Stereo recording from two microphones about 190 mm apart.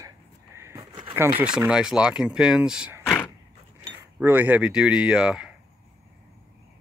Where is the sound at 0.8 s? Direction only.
25° right (ahead or behind).